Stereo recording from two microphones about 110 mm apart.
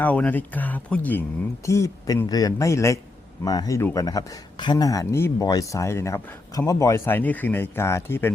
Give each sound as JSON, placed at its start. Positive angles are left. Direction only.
{"t": 0.0, "sound": "speech", "side_deg": 15}
{"t": 1.6, "sound": "speech", "side_deg": 25}